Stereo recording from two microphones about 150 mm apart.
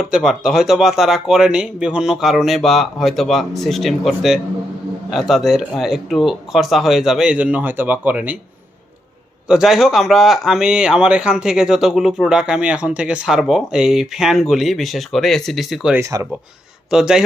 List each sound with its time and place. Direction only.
0.0 s a man's voice: centre (ahead or behind)
9.5 s a man's voice: centre (ahead or behind)
16.0 s speech: 20° right (ahead or behind)
16.9 s a man's voice: 5° right (ahead or behind)